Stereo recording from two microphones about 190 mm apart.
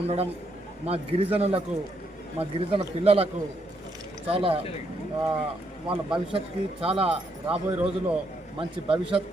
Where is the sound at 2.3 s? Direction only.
30° right (ahead or behind).